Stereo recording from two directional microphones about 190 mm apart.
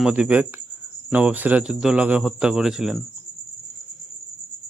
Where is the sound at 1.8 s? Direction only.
5° right (ahead or behind).